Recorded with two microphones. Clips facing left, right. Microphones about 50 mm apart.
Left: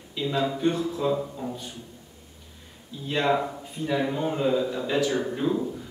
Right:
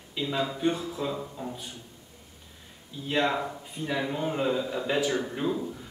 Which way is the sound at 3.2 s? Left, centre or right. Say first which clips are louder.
Left 4 dB; centre.